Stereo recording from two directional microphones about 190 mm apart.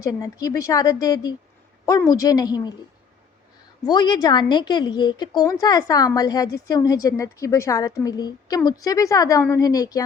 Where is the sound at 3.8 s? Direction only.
20° left (ahead or behind).